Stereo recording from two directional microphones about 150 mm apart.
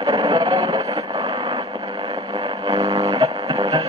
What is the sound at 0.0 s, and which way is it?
Vehicle, 25° right (ahead or behind).